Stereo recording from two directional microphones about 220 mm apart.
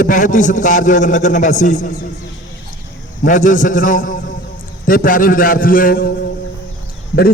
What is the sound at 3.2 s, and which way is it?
A man's voice, 35° left (ahead or behind).